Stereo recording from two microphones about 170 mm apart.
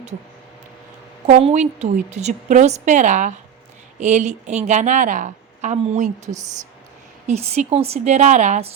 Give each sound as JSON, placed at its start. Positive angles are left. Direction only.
{"t": 1.3, "sound": "a woman's voice", "side_deg": -40}